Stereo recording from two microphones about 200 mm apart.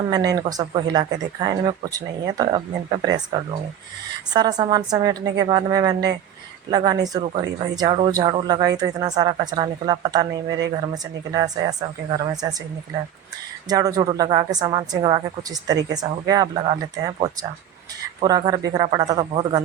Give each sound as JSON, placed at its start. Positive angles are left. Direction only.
{"t": 0.1, "sound": "a woman's voice", "side_deg": -20}
{"t": 4.4, "sound": "a woman's voice", "side_deg": -20}
{"t": 13.7, "sound": "a woman's voice", "side_deg": -20}